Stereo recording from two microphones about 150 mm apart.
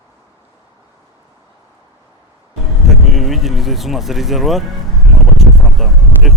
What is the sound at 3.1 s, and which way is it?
Speech, centre (ahead or behind).